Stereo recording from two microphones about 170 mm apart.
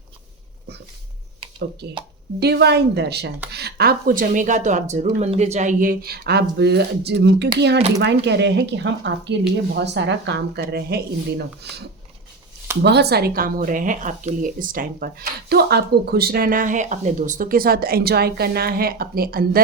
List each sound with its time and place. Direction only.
2.4 s speech: 75° right (ahead or behind); by 19.6 s 60° right (ahead or behind)